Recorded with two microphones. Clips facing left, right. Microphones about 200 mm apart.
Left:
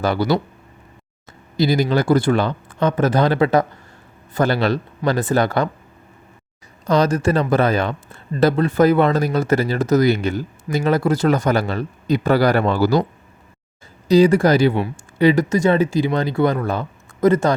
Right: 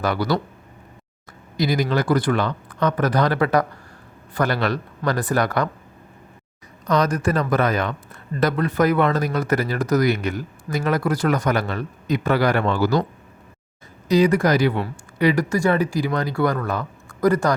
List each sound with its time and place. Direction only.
0.0 s a man's voice: 25° left (ahead or behind)
1.5 s a man's voice: 30° left (ahead or behind)
6.8 s a man's voice: 30° left (ahead or behind)
14.1 s a man's voice: 30° left (ahead or behind)